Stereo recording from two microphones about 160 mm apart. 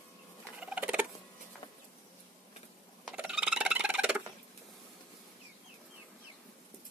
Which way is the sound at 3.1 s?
5° right (ahead or behind).